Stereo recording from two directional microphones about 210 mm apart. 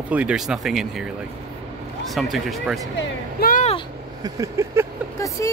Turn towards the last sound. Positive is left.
turn(degrees=10)  # may be behind; listen again after turning